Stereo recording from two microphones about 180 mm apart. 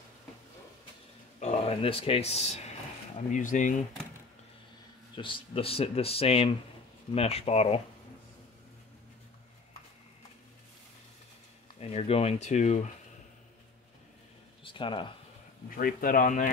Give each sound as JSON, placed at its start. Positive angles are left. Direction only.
{"t": 1.4, "sound": "speech", "side_deg": 35}
{"t": 5.1, "sound": "speech", "side_deg": 30}
{"t": 11.8, "sound": "speech", "side_deg": 35}
{"t": 14.6, "sound": "speech", "side_deg": 30}
{"t": 15.7, "sound": "speech", "side_deg": 50}